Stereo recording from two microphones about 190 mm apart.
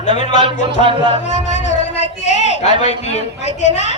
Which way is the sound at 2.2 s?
35° left (ahead or behind).